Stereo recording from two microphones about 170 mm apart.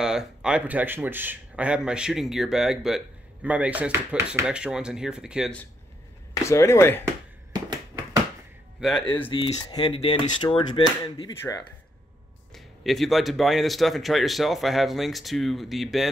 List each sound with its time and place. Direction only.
0.0 s speech: 5° right (ahead or behind)
6.3 s speech: 15° left (ahead or behind)
7.5 s a sound: 25° right (ahead or behind)
9.3 s speech: 25° left (ahead or behind)
12.5 s speech: centre (ahead or behind)